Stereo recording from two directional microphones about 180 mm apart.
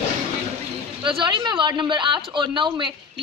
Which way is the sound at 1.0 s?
25° right (ahead or behind).